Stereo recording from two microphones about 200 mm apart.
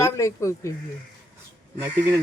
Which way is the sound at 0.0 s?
15° left (ahead or behind).